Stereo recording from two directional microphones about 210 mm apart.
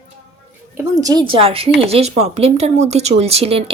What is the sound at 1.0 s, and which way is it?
Speech, 20° right (ahead or behind).